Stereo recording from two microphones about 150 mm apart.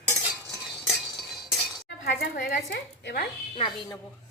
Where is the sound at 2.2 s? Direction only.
90° left.